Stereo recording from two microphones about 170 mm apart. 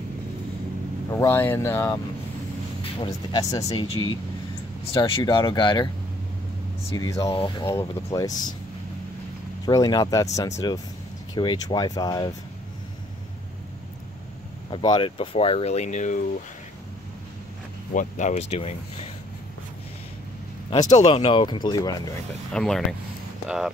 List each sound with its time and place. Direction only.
1.1 s speech: 15° left (ahead or behind)
2.8 s speech: 30° left (ahead or behind)
6.9 s speech: 20° left (ahead or behind)
9.7 s speech: 25° left (ahead or behind)
14.7 s speech: 30° left (ahead or behind); by 16.2 s 45° left (ahead or behind)
17.9 s speech: 45° left (ahead or behind)
20.9 s speech: 25° left (ahead or behind)
22.5 s speech: 5° left (ahead or behind)